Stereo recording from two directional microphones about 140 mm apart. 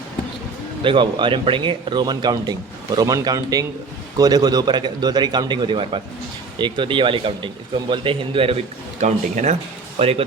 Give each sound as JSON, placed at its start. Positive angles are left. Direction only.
{"t": 0.9, "sound": "a man's voice", "side_deg": -35}
{"t": 9.0, "sound": "speech", "side_deg": -60}
{"t": 10.0, "sound": "speech", "side_deg": -45}